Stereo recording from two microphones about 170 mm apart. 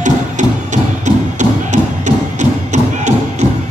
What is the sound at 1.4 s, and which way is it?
Thump, 45° right (ahead or behind).